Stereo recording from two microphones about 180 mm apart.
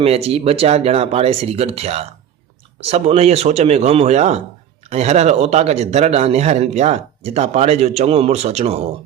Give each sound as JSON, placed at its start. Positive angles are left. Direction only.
{"t": 0.0, "sound": "a man's voice", "side_deg": -35}